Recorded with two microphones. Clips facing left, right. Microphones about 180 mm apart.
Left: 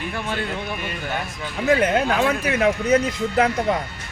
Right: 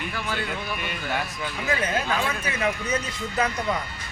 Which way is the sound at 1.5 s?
70° left (ahead or behind).